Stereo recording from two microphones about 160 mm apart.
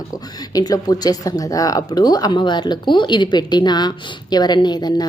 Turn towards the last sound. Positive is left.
turn(degrees=25)  # may be behind; listen again after turning